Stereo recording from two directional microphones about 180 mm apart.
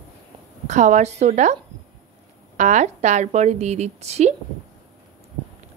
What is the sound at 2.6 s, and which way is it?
A woman's voice, 40° right (ahead or behind).